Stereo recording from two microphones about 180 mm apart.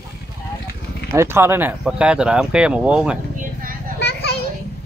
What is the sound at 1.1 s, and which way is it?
Speech, 15° right (ahead or behind).